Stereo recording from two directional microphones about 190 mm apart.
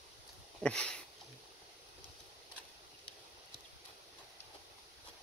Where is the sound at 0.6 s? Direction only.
5° left (ahead or behind).